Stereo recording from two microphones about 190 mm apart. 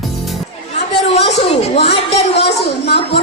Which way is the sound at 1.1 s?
35° left (ahead or behind).